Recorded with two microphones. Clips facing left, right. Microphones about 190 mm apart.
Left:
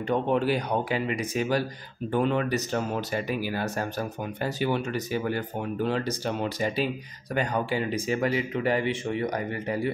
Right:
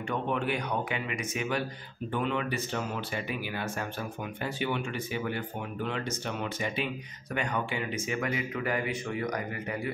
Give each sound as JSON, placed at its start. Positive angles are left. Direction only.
{"t": 0.1, "sound": "speech", "side_deg": 35}